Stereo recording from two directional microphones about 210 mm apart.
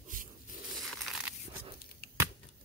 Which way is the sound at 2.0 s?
45° left (ahead or behind).